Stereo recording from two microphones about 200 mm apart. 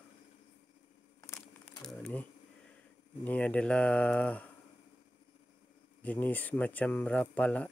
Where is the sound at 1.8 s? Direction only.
5° left (ahead or behind).